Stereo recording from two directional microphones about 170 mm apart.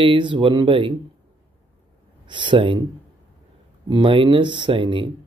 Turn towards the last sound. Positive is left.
turn(degrees=-30)  # may be behind; listen again after turning